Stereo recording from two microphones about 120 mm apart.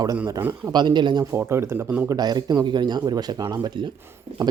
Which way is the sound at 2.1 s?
35° right (ahead or behind).